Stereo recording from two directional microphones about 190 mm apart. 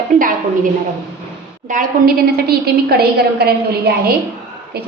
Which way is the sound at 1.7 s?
45° right (ahead or behind).